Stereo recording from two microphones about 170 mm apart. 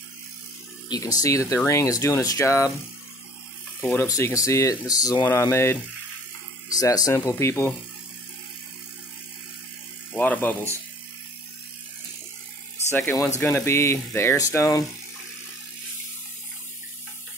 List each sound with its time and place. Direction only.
0.8 s speech: 25° left (ahead or behind)
3.8 s speech: 10° left (ahead or behind)
10.1 s speech: 10° left (ahead or behind)
13.4 s speech: 15° left (ahead or behind)